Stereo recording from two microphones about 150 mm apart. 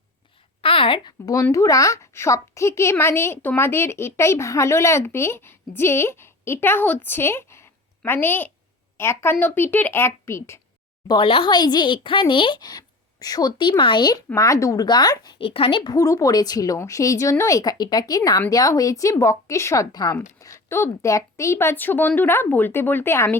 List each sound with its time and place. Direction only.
0.6 s speech: 35° left (ahead or behind); by 10.6 s 20° left (ahead or behind)
11.1 s speech: 35° left (ahead or behind); by 23.4 s 15° left (ahead or behind)